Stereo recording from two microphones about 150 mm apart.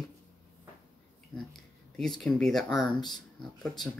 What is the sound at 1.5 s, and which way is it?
Speech, 5° left (ahead or behind).